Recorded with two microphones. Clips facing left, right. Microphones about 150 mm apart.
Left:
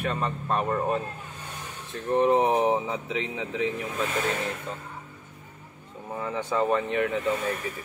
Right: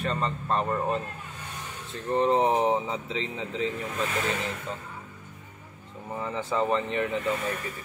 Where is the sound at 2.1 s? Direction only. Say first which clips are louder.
Left 2 dB; 10° left (ahead or behind).